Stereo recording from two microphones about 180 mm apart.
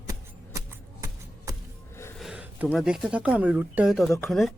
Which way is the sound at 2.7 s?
Centre (ahead or behind).